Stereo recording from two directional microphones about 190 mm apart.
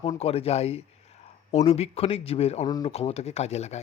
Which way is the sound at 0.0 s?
30° left (ahead or behind).